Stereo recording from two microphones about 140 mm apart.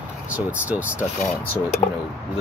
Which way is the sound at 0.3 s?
10° right (ahead or behind).